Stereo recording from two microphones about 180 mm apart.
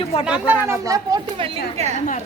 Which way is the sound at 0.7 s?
20° right (ahead or behind).